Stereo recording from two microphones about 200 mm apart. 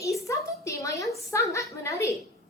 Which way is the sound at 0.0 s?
15° left (ahead or behind).